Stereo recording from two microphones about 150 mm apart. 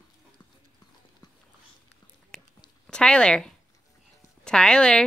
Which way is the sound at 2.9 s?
5° left (ahead or behind).